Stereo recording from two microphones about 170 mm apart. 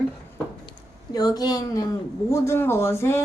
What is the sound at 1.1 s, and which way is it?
Speech, 20° left (ahead or behind).